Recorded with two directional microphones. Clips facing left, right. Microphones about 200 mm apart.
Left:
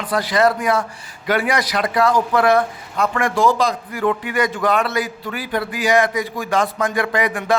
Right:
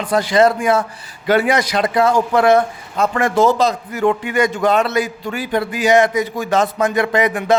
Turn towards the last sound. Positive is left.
turn(degrees=-20)  # may be behind; listen again after turning